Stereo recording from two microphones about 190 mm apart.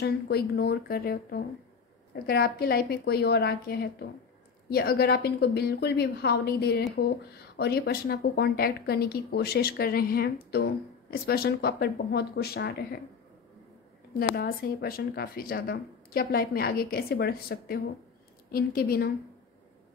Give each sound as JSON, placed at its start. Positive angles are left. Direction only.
{"t": 0.0, "sound": "speech", "side_deg": 55}
{"t": 14.1, "sound": "speech", "side_deg": 55}